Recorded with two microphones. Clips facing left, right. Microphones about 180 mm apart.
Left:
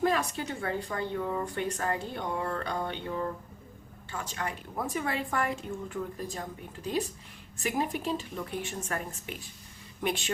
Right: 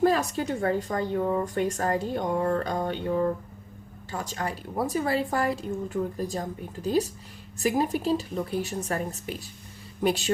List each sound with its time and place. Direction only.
0.0 s a woman's voice: 40° right (ahead or behind)